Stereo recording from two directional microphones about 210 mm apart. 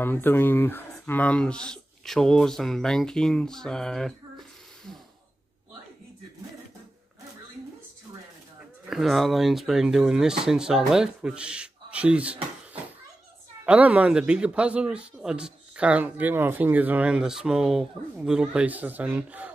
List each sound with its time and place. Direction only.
0.0 s a man's voice: 10° left (ahead or behind)
8.8 s a man's voice: centre (ahead or behind)
13.7 s a man's voice: 5° right (ahead or behind)